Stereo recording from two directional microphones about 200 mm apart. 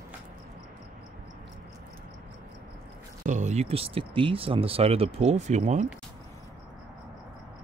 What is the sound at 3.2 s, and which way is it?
Speech, 35° right (ahead or behind).